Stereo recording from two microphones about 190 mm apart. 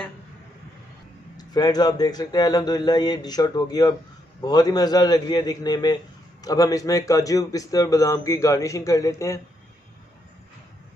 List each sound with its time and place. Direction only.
1.3 s a man's voice: 20° left (ahead or behind)